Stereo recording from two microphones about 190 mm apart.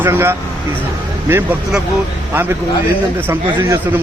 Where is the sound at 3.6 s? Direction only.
10° right (ahead or behind).